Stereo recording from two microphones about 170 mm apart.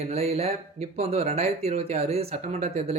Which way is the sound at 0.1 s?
35° right (ahead or behind).